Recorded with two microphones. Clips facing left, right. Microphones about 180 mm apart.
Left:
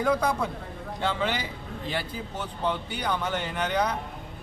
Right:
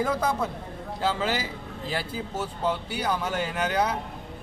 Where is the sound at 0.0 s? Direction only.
5° right (ahead or behind).